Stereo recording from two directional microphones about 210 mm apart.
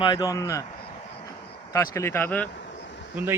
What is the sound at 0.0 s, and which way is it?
Speech, 20° left (ahead or behind).